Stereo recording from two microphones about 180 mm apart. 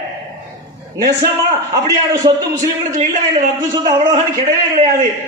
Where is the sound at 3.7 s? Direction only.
20° right (ahead or behind).